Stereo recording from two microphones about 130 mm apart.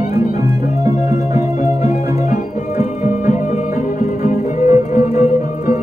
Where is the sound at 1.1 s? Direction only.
60° left (ahead or behind).